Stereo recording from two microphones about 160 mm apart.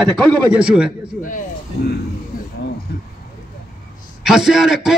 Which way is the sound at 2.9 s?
90° left.